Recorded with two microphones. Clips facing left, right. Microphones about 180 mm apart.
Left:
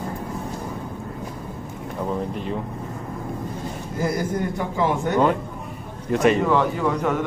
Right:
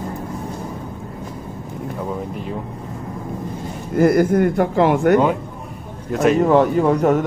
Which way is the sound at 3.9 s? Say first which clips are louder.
Right 11 dB; 60° right (ahead or behind).